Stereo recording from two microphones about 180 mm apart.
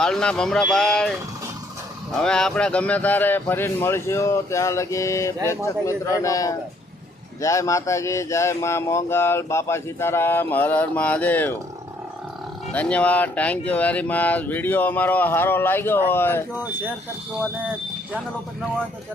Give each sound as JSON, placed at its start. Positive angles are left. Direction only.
{"t": 0.0, "sound": "speech", "side_deg": 5}
{"t": 2.2, "sound": "speech", "side_deg": 5}
{"t": 12.7, "sound": "speech", "side_deg": 5}